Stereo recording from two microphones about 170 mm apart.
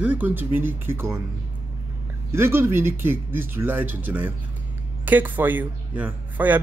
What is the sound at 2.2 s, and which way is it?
Speech, 15° right (ahead or behind).